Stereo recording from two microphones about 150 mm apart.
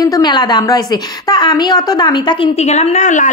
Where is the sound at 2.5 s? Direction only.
50° left (ahead or behind).